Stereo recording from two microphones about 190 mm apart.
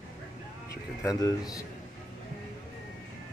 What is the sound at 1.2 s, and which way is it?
Speech, 20° left (ahead or behind).